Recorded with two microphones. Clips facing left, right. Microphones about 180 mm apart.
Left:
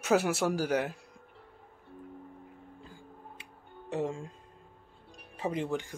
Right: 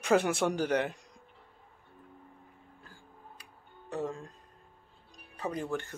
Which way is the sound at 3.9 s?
25° left (ahead or behind).